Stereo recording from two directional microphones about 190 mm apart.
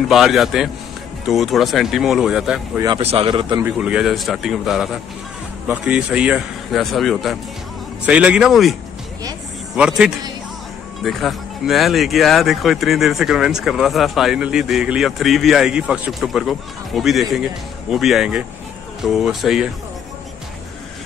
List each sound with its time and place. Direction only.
0.1 s speech: centre (ahead or behind)
3.0 s speech: 30° right (ahead or behind)
3.6 s speech: 5° right (ahead or behind)
9.8 s speech: 5° right (ahead or behind)